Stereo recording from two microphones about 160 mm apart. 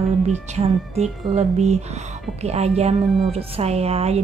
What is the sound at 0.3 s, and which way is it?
A woman's voice, 40° right (ahead or behind).